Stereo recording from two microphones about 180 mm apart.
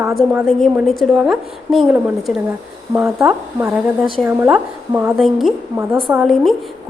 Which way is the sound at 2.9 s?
10° right (ahead or behind).